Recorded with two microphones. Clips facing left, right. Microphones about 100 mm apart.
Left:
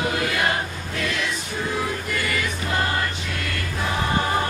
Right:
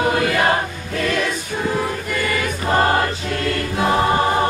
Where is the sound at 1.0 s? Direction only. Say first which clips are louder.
Right 7 dB; 50° right (ahead or behind).